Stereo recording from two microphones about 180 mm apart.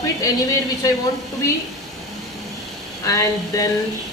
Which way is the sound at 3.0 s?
20° left (ahead or behind).